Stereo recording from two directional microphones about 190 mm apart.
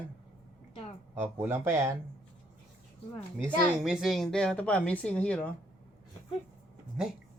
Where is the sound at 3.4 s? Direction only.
5° right (ahead or behind).